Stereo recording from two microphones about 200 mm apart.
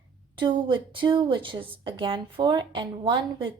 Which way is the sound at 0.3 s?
25° right (ahead or behind).